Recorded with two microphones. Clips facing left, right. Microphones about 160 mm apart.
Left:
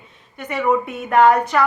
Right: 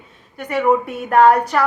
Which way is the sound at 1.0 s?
35° right (ahead or behind).